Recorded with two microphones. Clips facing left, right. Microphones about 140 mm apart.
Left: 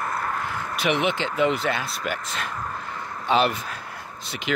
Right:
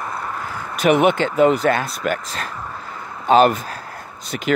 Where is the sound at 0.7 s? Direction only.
45° right (ahead or behind).